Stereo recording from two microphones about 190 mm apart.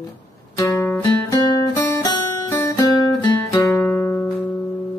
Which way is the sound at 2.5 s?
15° left (ahead or behind).